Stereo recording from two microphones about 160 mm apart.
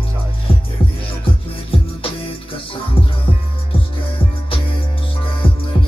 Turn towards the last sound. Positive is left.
turn(degrees=35)  # may be behind; listen again after turning